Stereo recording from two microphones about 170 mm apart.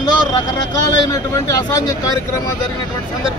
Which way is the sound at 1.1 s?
20° left (ahead or behind).